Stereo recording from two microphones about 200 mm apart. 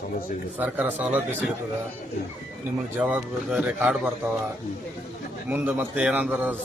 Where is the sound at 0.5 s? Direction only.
10° right (ahead or behind).